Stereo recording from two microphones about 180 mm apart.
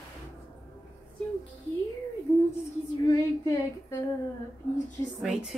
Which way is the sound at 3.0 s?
20° left (ahead or behind).